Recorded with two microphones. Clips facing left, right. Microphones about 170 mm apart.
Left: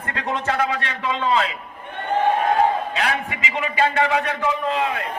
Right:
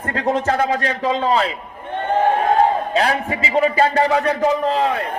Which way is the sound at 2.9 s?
35° right (ahead or behind).